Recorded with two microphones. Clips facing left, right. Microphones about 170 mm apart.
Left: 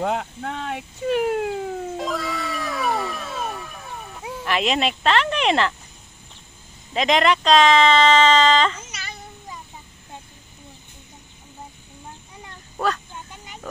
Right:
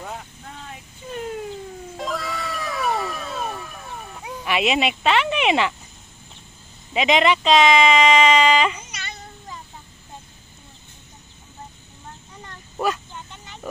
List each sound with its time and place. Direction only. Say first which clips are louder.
0.0 s speech: left 11 dB; 75° left (ahead or behind)
2.0 s cat: left 2 dB; centre (ahead or behind)
6.9 s speech: even; 5° right (ahead or behind)
8.9 s child singing: even; 5° left (ahead or behind)
12.7 s a sound: even; 10° right (ahead or behind)